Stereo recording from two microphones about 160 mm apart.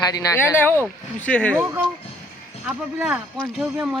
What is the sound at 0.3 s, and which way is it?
Speech, 10° left (ahead or behind).